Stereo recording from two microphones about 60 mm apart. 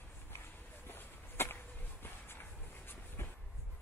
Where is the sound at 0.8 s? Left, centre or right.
Left.